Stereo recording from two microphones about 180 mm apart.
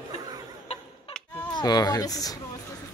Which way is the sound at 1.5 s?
20° left (ahead or behind).